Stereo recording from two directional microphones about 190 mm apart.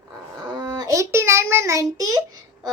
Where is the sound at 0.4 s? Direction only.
20° right (ahead or behind).